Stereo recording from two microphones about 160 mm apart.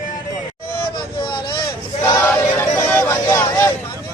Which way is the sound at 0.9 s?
30° left (ahead or behind).